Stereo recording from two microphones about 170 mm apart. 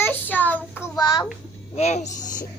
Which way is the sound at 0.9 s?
25° left (ahead or behind).